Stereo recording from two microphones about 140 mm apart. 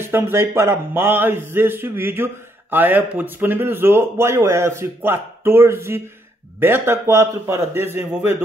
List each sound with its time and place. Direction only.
0.0 s speech: 15° right (ahead or behind)